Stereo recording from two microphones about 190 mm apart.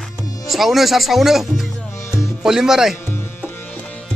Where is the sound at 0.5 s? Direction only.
Centre (ahead or behind).